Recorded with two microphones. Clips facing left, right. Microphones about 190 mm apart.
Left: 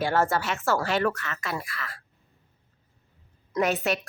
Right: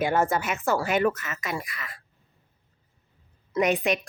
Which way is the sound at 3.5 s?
15° right (ahead or behind).